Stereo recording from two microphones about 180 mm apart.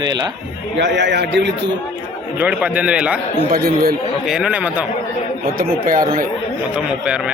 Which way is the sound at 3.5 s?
55° right (ahead or behind).